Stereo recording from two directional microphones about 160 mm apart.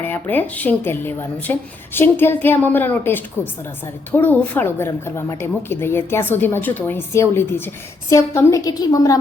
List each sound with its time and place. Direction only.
0.0 s a woman's voice: 10° left (ahead or behind)